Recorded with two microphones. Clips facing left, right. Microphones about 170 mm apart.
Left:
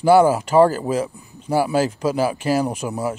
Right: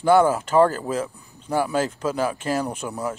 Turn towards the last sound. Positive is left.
turn(degrees=15)  # may be behind; listen again after turning